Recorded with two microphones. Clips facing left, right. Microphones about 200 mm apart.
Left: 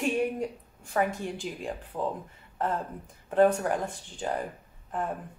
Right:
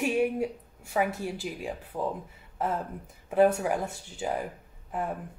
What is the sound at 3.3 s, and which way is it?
Speech, 10° right (ahead or behind).